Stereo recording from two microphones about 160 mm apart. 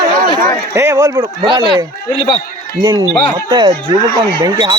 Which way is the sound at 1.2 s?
30° right (ahead or behind).